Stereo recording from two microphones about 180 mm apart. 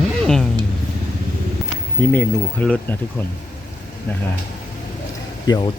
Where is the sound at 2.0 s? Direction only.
10° left (ahead or behind).